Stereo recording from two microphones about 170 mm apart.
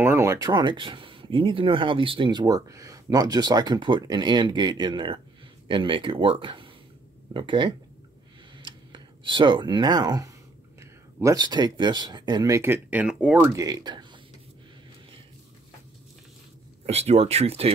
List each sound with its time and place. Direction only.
0.0 s speech: 15° right (ahead or behind)
8.5 s a sound: 25° right (ahead or behind)
10.8 s speech: 15° right (ahead or behind)
16.8 s speech: 40° right (ahead or behind)